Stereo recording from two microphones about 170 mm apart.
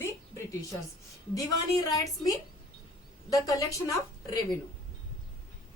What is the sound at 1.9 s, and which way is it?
A woman's voice, 20° left (ahead or behind).